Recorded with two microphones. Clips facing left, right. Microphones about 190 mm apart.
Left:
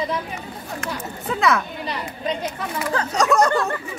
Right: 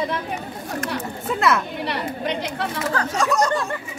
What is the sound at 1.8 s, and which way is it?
Speech, 75° right (ahead or behind).